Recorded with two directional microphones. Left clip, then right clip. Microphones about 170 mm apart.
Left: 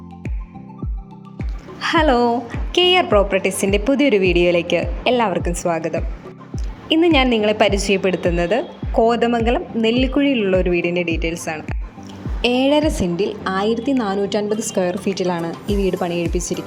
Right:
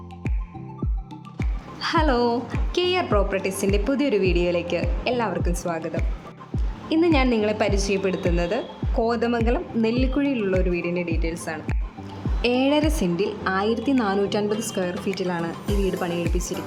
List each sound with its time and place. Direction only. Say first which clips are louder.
1.8 s a woman's voice: left 6 dB; 15° left (ahead or behind)